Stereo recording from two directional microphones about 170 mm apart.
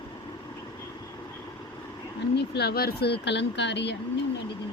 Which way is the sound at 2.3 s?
75° left (ahead or behind).